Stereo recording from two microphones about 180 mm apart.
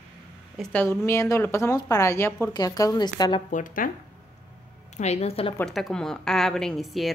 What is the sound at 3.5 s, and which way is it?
Speech, 45° left (ahead or behind).